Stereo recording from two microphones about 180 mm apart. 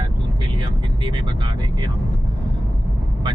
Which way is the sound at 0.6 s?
25° right (ahead or behind).